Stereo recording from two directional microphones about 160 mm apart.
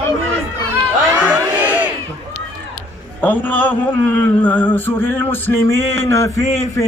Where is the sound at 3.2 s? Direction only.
10° left (ahead or behind).